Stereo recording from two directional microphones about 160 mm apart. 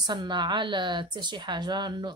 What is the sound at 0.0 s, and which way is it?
Speech, 25° right (ahead or behind).